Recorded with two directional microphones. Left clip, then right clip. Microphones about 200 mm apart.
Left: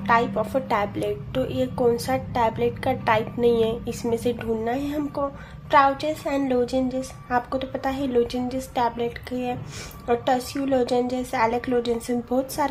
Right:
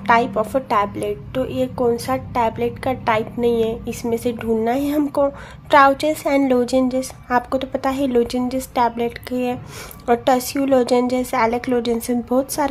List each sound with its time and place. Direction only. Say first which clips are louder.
0.0 s a woman's voice: right 5 dB; 20° right (ahead or behind)